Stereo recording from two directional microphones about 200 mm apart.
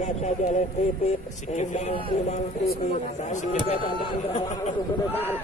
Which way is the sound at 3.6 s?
25° left (ahead or behind).